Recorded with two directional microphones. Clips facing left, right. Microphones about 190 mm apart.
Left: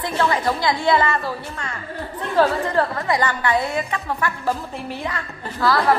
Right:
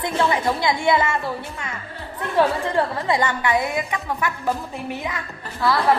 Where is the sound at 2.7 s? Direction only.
20° right (ahead or behind).